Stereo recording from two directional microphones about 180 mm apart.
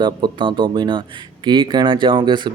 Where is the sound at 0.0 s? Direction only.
25° right (ahead or behind).